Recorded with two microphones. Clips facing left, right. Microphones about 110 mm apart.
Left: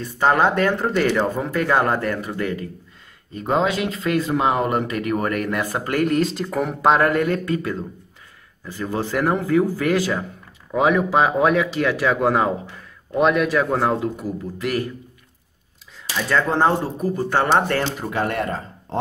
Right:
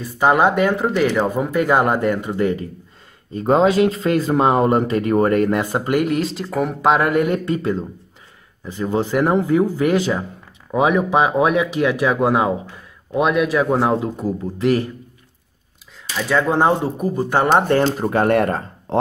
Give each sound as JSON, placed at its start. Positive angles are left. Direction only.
{"t": 0.0, "sound": "speech", "side_deg": -10}
{"t": 3.3, "sound": "speech", "side_deg": -35}
{"t": 6.0, "sound": "speech", "side_deg": 0}
{"t": 7.0, "sound": "speech", "side_deg": -15}
{"t": 7.4, "sound": "speech", "side_deg": -25}
{"t": 16.2, "sound": "speech", "side_deg": -10}
{"t": 17.8, "sound": "speech", "side_deg": -45}